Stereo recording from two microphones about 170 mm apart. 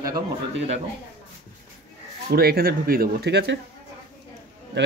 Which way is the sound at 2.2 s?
65° right (ahead or behind).